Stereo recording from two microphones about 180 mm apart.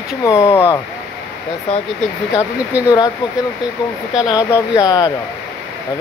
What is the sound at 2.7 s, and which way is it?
Speech, 10° right (ahead or behind).